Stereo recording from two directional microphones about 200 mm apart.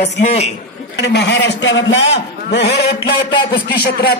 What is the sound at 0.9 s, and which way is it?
A man's voice, 55° left (ahead or behind).